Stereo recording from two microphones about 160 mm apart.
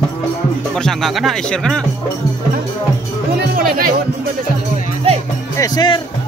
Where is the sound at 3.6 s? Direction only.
65° right (ahead or behind).